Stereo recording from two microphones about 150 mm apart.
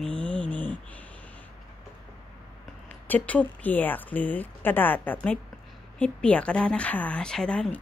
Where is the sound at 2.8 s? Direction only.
10° left (ahead or behind).